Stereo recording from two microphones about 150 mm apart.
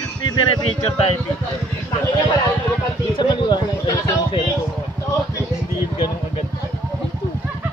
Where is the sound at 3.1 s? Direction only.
30° left (ahead or behind).